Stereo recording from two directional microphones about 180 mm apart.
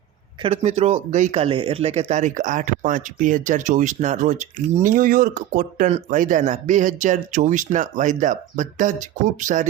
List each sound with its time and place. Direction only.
0.4 s a man's voice: 35° right (ahead or behind)